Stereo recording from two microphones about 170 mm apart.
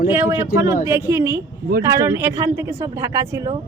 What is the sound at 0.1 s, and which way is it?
Speech, 15° right (ahead or behind).